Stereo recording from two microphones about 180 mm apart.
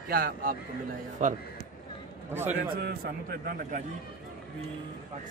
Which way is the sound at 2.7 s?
55° right (ahead or behind).